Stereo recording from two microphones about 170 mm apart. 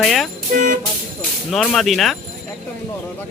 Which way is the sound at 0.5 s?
55° right (ahead or behind).